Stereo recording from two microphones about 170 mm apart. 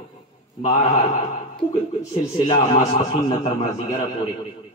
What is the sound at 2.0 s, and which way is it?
A man's voice, 25° left (ahead or behind).